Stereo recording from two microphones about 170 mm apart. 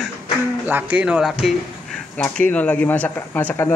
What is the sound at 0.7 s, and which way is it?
Speech, 10° right (ahead or behind).